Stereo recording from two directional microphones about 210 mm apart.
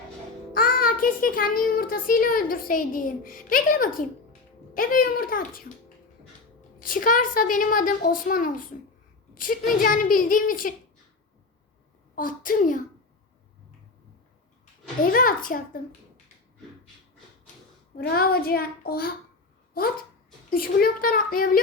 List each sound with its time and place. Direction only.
0.5 s a child's voice: 40° left (ahead or behind)
6.8 s a child's voice: 40° left (ahead or behind)
12.1 s a child's voice: 40° left (ahead or behind)
15.1 s a child's voice: 40° left (ahead or behind)
17.9 s child singing: 45° left (ahead or behind)
20.5 s child singing: 45° left (ahead or behind)